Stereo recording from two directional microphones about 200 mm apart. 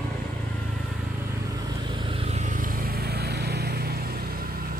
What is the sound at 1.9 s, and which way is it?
Vehicle, 30° right (ahead or behind).